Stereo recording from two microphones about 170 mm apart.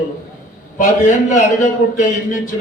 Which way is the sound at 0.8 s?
50° left (ahead or behind).